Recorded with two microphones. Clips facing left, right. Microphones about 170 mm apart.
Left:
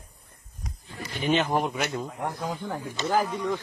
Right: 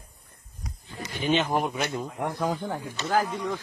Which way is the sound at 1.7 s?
15° right (ahead or behind).